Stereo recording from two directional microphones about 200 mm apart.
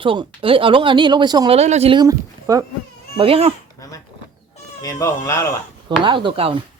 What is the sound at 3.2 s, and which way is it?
Speech, 30° right (ahead or behind).